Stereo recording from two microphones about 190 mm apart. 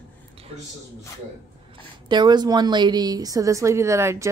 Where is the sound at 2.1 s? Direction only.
25° right (ahead or behind).